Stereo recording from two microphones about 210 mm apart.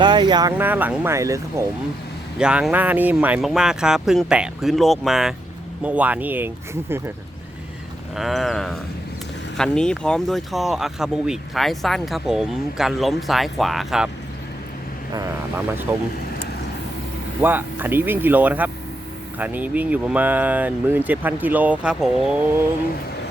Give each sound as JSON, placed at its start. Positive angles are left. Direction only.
{"t": 0.0, "sound": "speech", "side_deg": -20}
{"t": 0.6, "sound": "speech", "side_deg": -10}
{"t": 8.1, "sound": "speech", "side_deg": 0}
{"t": 15.1, "sound": "speech", "side_deg": -15}
{"t": 17.4, "sound": "speech", "side_deg": -10}